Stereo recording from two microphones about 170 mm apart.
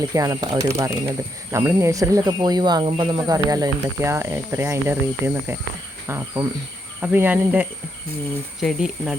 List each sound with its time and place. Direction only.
0.0 s speech: 20° right (ahead or behind); by 9.1 s 5° right (ahead or behind)